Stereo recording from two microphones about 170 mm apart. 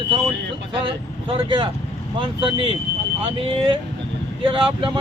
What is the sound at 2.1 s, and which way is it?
Speech, 30° right (ahead or behind).